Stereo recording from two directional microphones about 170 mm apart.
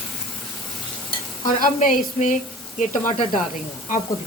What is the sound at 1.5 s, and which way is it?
Sizzle, 55° left (ahead or behind).